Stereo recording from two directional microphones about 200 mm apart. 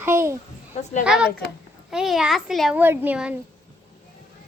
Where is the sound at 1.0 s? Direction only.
5° right (ahead or behind).